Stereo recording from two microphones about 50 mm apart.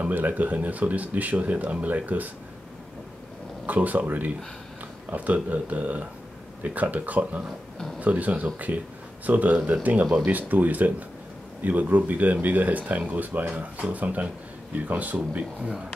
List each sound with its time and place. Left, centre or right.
0.0 s speech: right
3.6 s speech: right